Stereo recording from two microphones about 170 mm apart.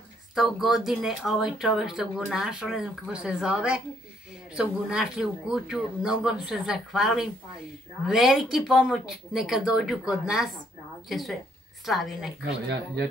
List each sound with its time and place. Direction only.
0.3 s speech: centre (ahead or behind)
12.6 s speech: 75° right (ahead or behind)